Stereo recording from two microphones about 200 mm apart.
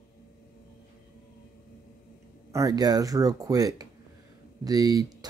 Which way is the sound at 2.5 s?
20° right (ahead or behind).